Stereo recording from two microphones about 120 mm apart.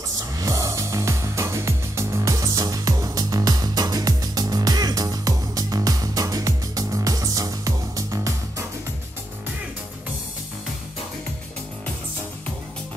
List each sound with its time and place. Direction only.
0.4 s music: 25° right (ahead or behind)